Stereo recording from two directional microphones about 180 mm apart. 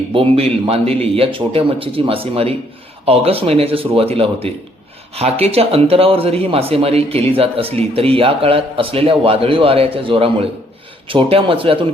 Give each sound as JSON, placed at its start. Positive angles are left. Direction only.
{"t": 0.1, "sound": "a man's voice", "side_deg": -30}